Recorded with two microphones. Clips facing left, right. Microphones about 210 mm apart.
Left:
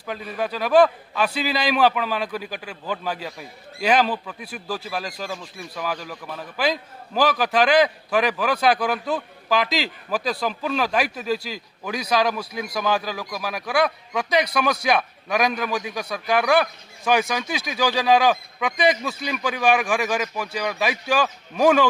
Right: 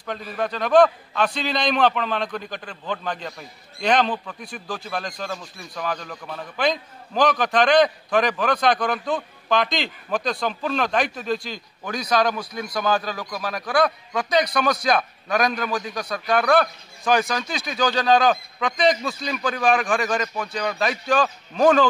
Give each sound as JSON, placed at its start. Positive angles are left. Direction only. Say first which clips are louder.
{"t": 0.0, "sound": "a man's voice", "louder": "even", "side_deg": 5}